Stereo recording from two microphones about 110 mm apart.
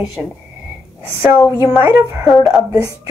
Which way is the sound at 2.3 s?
Centre (ahead or behind).